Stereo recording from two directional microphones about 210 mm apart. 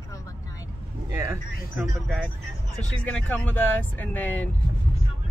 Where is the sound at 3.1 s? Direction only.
5° left (ahead or behind).